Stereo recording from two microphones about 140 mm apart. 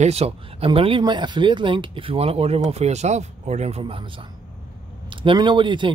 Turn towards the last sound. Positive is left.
turn(degrees=-35)  # may be behind; listen again after turning